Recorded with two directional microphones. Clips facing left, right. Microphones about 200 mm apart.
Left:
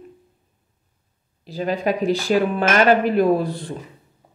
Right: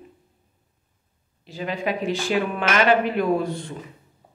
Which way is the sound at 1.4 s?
40° left (ahead or behind).